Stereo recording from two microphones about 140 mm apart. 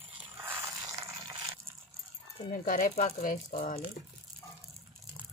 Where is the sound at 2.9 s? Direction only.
65° left (ahead or behind).